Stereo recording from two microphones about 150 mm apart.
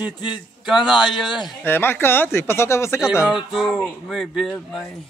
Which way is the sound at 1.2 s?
30° left (ahead or behind).